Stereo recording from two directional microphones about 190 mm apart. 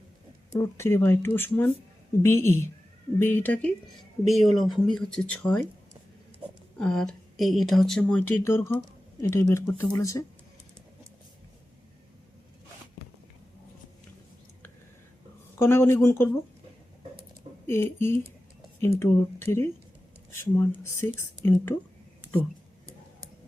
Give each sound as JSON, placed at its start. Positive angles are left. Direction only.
{"t": 0.5, "sound": "speech", "side_deg": 15}
{"t": 6.7, "sound": "speech", "side_deg": 5}
{"t": 15.5, "sound": "speech", "side_deg": 15}
{"t": 17.7, "sound": "speech", "side_deg": 10}